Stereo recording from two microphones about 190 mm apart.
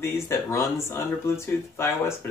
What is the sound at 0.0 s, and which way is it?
Speech, 15° left (ahead or behind).